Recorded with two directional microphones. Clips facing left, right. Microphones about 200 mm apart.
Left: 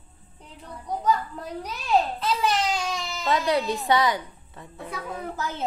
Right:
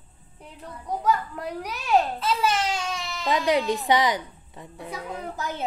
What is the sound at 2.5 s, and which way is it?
Baby cry, 5° right (ahead or behind).